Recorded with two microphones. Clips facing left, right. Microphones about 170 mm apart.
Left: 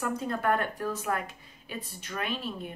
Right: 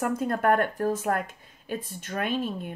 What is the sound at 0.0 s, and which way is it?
Speech, 50° right (ahead or behind).